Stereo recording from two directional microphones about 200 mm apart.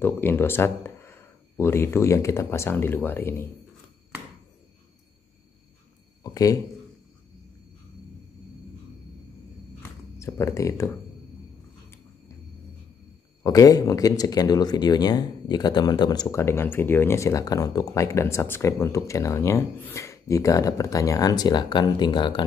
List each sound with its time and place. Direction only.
0.0 s speech: 10° left (ahead or behind)
6.2 s speech: 15° left (ahead or behind)
10.1 s speech: 15° left (ahead or behind)
13.4 s speech: 15° left (ahead or behind)